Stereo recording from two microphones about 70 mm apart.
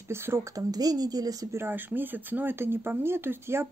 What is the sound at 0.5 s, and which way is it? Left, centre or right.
A child's voice, right.